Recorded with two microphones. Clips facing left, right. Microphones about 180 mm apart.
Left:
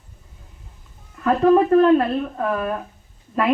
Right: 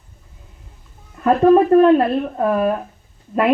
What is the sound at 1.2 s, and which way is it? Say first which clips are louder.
Speech: right 3 dB; 25° right (ahead or behind).